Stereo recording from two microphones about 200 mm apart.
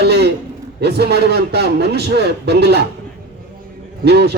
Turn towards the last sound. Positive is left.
turn(degrees=-55)  # may be behind; listen again after turning